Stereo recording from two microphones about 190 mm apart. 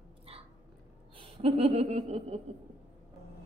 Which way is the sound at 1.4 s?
30° right (ahead or behind).